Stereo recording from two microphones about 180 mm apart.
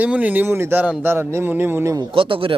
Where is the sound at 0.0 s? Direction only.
10° right (ahead or behind).